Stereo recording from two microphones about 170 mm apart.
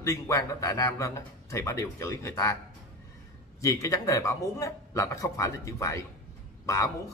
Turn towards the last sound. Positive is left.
turn(degrees=15)  # may be behind; listen again after turning